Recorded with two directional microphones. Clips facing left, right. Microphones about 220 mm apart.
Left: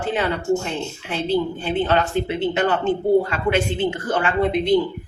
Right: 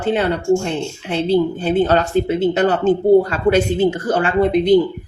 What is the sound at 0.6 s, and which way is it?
Speech, 35° right (ahead or behind).